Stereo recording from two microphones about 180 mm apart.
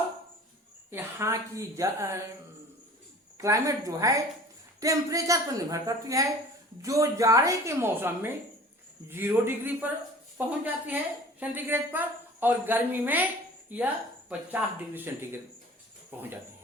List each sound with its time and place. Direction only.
0.9 s a woman's voice: 15° right (ahead or behind)
3.3 s a woman's voice: 20° right (ahead or behind)